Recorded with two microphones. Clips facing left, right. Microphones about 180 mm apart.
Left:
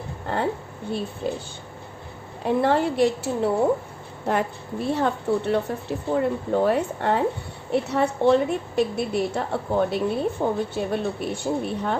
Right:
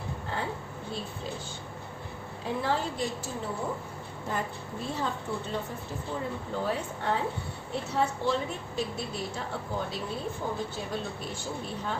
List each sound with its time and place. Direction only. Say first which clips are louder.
1.2 s a woman's voice: left 12 dB; 60° left (ahead or behind)
2.4 s a woman's voice: left 10 dB; 65° left (ahead or behind)